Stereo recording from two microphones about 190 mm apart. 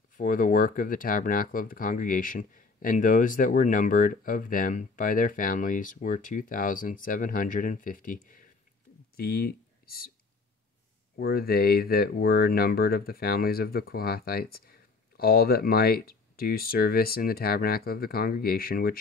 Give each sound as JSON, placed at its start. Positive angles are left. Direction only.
{"t": 0.1, "sound": "speech", "side_deg": 45}
{"t": 9.1, "sound": "a sound", "side_deg": 55}
{"t": 11.1, "sound": "speech", "side_deg": 55}